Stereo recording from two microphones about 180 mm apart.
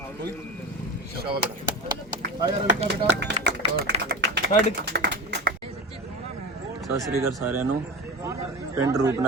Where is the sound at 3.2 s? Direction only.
70° right (ahead or behind).